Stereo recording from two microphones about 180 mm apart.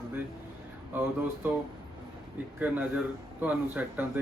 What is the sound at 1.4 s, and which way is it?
Speech, 10° right (ahead or behind).